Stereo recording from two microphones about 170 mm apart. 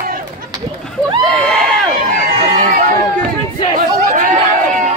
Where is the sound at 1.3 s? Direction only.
5° left (ahead or behind).